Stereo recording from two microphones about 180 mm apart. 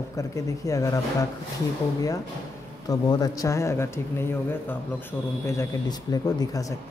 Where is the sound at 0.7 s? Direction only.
20° left (ahead or behind).